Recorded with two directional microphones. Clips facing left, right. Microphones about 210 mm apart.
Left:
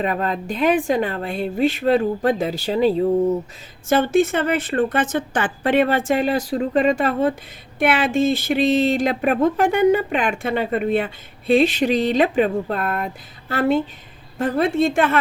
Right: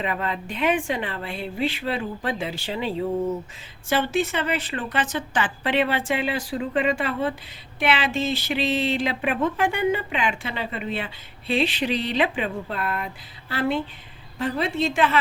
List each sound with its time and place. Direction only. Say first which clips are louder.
0.0 s a woman's voice: left 5 dB; 40° left (ahead or behind)